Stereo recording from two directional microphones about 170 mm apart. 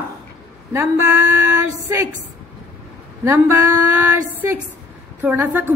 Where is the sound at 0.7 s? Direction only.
15° right (ahead or behind).